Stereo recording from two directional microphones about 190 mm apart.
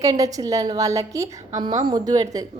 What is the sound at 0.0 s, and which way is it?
A woman's voice, 20° right (ahead or behind).